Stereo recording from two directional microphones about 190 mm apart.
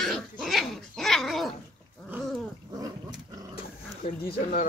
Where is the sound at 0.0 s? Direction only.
Centre (ahead or behind).